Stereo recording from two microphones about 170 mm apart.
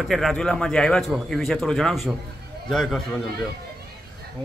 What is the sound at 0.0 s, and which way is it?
Speech, centre (ahead or behind).